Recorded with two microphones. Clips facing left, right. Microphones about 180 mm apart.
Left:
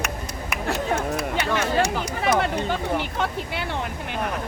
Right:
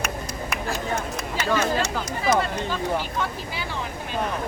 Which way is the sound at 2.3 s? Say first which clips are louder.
Left 2 dB; 65° left (ahead or behind).